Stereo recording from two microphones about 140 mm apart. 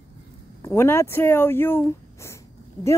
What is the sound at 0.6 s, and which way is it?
Speech, 20° left (ahead or behind).